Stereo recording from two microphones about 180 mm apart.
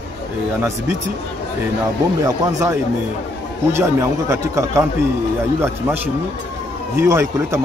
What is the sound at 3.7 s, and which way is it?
Speech, 15° right (ahead or behind).